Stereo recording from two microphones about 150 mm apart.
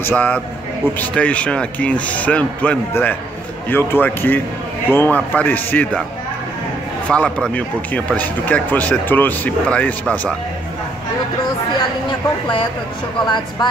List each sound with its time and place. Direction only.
0.0 s speech: 10° left (ahead or behind)
7.1 s speech: 5° left (ahead or behind)
13.2 s speech: 30° left (ahead or behind)